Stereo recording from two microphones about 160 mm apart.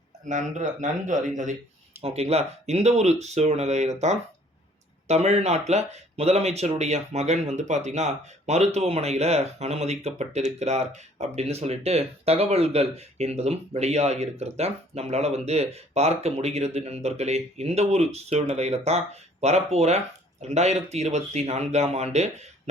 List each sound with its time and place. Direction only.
0.3 s speech: 50° right (ahead or behind)
2.0 s speech: 40° right (ahead or behind)
5.0 s speech: 45° right (ahead or behind)